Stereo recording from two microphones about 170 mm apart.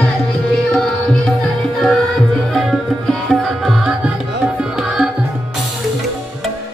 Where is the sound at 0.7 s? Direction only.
5° left (ahead or behind).